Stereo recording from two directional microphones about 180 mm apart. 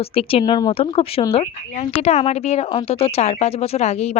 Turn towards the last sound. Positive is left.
turn(degrees=35)  # may be behind; listen again after turning